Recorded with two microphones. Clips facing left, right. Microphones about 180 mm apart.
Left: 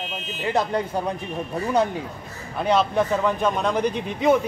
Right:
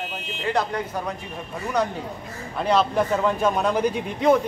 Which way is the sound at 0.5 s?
30° left (ahead or behind).